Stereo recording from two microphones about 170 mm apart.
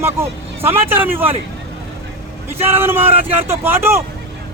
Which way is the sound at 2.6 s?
15° right (ahead or behind).